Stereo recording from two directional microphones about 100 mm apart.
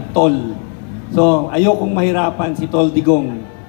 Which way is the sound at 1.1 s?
25° left (ahead or behind).